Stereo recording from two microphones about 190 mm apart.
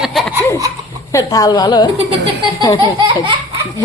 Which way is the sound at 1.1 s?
20° left (ahead or behind).